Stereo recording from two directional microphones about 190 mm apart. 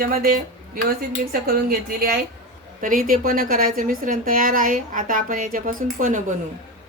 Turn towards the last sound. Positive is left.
turn(degrees=-45)  # may be behind; listen again after turning